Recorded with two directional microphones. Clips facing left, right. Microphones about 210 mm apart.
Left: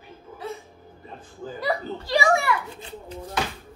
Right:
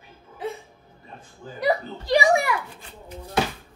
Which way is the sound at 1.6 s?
20° right (ahead or behind).